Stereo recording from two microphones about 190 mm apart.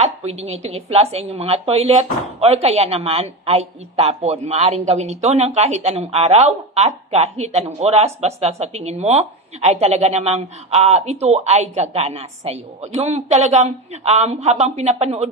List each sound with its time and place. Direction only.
0.0 s speech: 35° right (ahead or behind)